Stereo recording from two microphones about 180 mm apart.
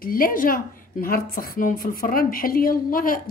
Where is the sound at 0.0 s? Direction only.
50° left (ahead or behind).